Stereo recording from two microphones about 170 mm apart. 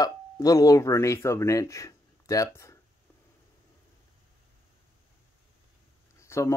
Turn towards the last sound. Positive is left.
turn(degrees=15)  # may be behind; listen again after turning